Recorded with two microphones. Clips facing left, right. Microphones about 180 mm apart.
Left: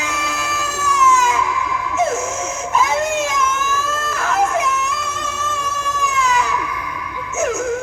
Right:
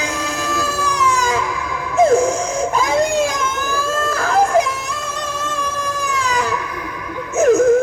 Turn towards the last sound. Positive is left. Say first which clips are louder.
# right 8 dB
turn(degrees=-35)  # may be behind; listen again after turning